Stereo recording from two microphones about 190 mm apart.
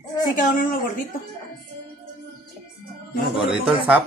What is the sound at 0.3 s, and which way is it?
Speech, 45° left (ahead or behind).